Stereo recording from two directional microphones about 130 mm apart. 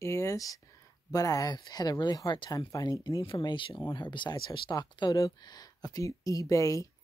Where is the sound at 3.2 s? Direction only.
40° left (ahead or behind).